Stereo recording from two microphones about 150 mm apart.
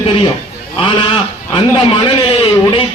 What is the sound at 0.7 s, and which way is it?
A man's voice, 35° left (ahead or behind).